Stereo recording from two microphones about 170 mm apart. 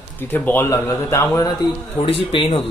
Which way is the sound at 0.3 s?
10° left (ahead or behind).